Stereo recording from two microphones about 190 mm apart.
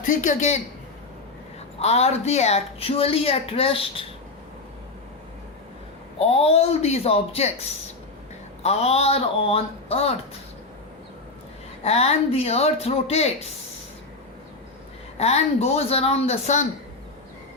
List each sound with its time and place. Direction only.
0.0 s speech: 40° left (ahead or behind)
1.8 s speech: 35° left (ahead or behind)
6.1 s speech: 30° left (ahead or behind)
8.6 s speech: 35° left (ahead or behind)
11.8 s speech: 35° left (ahead or behind)
15.2 s speech: 35° left (ahead or behind)